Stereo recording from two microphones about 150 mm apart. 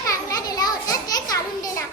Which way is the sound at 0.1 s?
25° left (ahead or behind).